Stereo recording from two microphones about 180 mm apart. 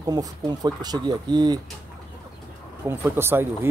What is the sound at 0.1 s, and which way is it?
Speech, 20° right (ahead or behind).